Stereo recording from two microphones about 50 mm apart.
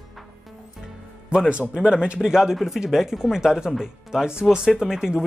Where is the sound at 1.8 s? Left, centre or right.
Right.